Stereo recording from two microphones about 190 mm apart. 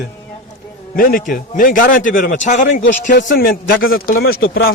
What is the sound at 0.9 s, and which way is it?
A man's voice, 50° left (ahead or behind).